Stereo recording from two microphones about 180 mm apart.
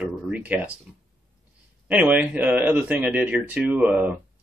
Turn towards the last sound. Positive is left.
turn(degrees=-10)  # may be behind; listen again after turning